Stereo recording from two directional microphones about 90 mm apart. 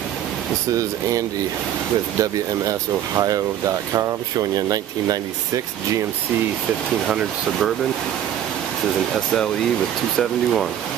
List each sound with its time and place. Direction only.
3.2 s speech: 40° right (ahead or behind)
7.1 s speech: 5° right (ahead or behind)
10.1 s speech: 5° left (ahead or behind)